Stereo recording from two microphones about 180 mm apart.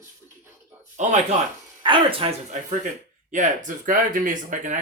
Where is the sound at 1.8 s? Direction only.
30° right (ahead or behind).